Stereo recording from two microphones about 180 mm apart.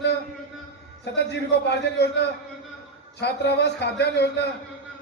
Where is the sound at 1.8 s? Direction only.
70° left (ahead or behind).